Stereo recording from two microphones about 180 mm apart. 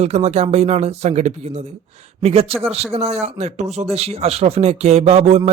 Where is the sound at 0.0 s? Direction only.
35° right (ahead or behind).